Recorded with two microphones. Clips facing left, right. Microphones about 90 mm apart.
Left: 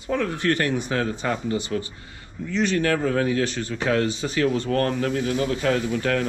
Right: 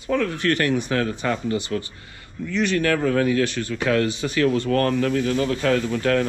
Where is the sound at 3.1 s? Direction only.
30° left (ahead or behind).